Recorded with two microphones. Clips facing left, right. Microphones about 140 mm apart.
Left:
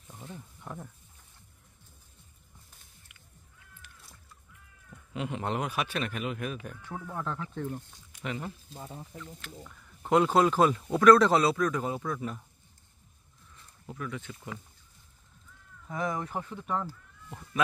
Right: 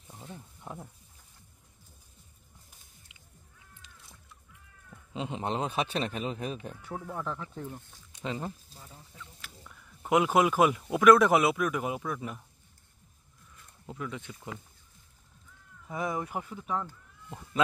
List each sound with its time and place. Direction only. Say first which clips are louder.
0.1 s wild animals: left 1 dB; 10° right (ahead or behind)
3.1 s music: even; 20° right (ahead or behind)
5.1 s speech: even; 25° right (ahead or behind)
6.8 s speech: even; 10° right (ahead or behind)
8.2 s speech: right 1 dB; 25° right (ahead or behind)
8.7 s speech: left 9 dB; 40° left (ahead or behind)
9.8 s a sound: even; centre (ahead or behind)
10.1 s speech: left 1 dB; 10° right (ahead or behind)
13.8 s speech: even; 20° right (ahead or behind)
15.9 s speech: even; 15° right (ahead or behind)